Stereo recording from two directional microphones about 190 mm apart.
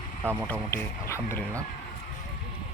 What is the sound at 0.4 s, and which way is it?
Speech, 10° left (ahead or behind).